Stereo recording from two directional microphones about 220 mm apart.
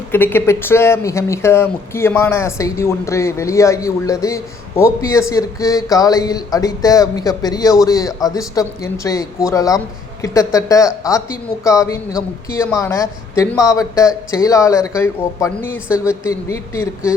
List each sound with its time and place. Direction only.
0.1 s a man's voice: 10° left (ahead or behind)